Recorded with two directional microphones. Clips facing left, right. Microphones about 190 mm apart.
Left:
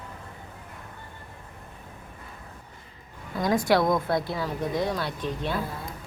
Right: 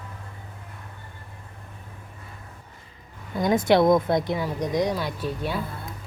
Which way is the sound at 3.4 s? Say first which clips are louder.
Right 3 dB; 20° right (ahead or behind).